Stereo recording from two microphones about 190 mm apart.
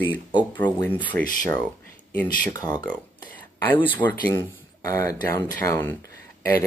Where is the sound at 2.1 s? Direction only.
20° left (ahead or behind).